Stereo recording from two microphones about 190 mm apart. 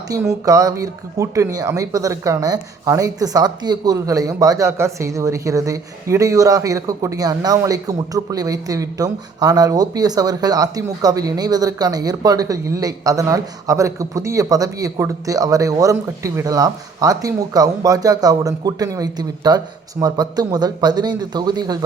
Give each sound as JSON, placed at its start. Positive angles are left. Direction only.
{"t": 0.1, "sound": "speech", "side_deg": -15}